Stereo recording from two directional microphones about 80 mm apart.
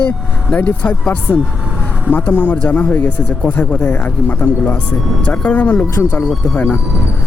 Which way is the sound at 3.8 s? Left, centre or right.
Left.